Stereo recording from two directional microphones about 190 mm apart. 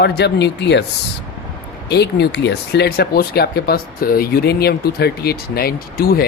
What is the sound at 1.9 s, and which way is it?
Speech, 60° left (ahead or behind).